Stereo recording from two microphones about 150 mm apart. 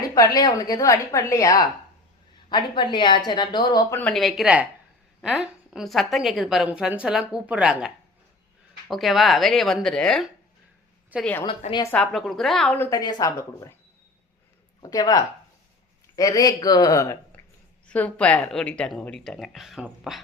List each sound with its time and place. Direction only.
0.1 s a woman's voice: 25° left (ahead or behind)
4.1 s a woman's voice: centre (ahead or behind)
11.4 s a woman's voice: 35° left (ahead or behind)
11.9 s a woman's voice: centre (ahead or behind)
12.9 s a woman's voice: 25° left (ahead or behind)
14.8 s a woman's voice: 25° left (ahead or behind)
17.8 s a woman's voice: 10° left (ahead or behind)